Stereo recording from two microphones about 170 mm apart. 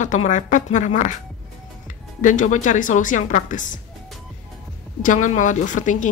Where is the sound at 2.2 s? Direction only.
50° left (ahead or behind).